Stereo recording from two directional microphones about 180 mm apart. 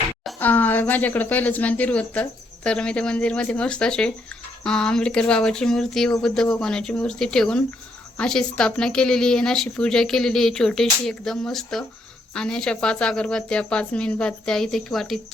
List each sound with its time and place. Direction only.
0.3 s speech: 10° left (ahead or behind)